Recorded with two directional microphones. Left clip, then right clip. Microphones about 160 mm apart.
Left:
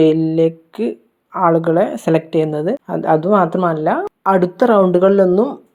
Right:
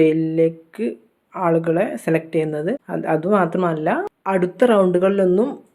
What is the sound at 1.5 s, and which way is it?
Speech, 20° left (ahead or behind).